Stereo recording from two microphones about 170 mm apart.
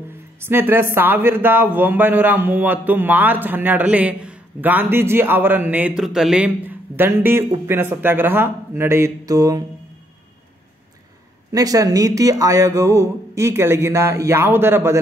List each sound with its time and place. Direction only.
0.5 s a man's voice: 15° right (ahead or behind)
11.5 s a man's voice: 20° right (ahead or behind)